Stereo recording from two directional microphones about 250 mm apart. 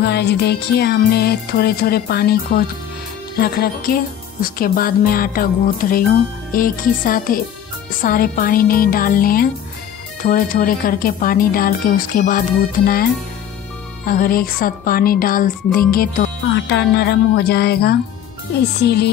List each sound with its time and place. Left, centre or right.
0.0 s speech: left